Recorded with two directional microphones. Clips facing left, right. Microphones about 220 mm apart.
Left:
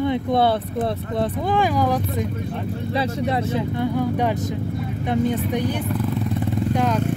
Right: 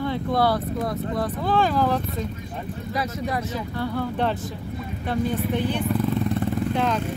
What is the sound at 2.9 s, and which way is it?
Speech, 25° left (ahead or behind).